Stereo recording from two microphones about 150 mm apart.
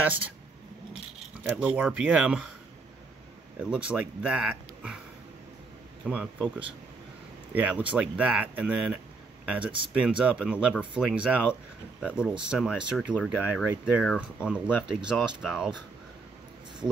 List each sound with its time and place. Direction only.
0.0 s speech: 10° right (ahead or behind)
1.4 s speech: 10° right (ahead or behind)
3.5 s speech: 5° right (ahead or behind)
6.0 s speech: 10° right (ahead or behind)
7.5 s speech: 10° right (ahead or behind)
9.6 s speech: 35° right (ahead or behind)
9.9 s speech: 5° right (ahead or behind)